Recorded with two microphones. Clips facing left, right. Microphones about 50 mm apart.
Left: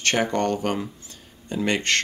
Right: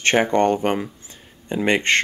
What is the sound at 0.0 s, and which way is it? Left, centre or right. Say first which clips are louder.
Speech: right 5 dB; right.